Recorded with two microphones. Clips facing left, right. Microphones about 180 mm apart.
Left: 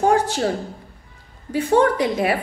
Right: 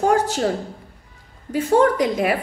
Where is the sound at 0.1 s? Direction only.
45° right (ahead or behind).